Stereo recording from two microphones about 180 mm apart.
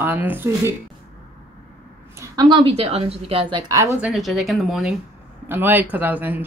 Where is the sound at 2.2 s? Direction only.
20° right (ahead or behind).